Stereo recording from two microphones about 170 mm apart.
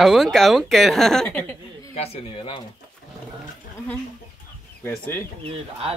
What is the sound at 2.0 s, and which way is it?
Speech, 30° left (ahead or behind).